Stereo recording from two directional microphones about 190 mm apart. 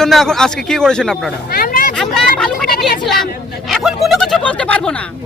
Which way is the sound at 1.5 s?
50° left (ahead or behind).